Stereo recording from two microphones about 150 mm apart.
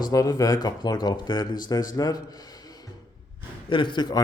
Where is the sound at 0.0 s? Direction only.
25° left (ahead or behind).